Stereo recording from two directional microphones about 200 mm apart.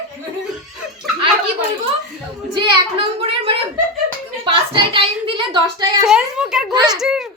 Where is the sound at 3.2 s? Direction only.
25° right (ahead or behind).